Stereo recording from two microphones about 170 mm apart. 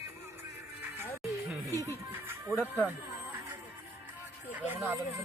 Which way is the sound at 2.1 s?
15° right (ahead or behind).